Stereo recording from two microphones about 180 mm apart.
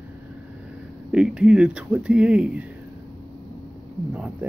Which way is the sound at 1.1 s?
5° right (ahead or behind).